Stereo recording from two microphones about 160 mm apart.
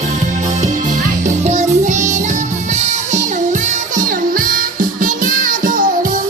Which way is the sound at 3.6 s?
55° right (ahead or behind).